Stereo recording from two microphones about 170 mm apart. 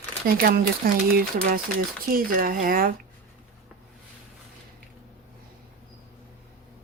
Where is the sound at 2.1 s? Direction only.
55° right (ahead or behind).